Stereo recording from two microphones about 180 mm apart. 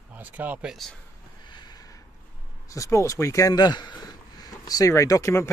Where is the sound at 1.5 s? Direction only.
25° left (ahead or behind).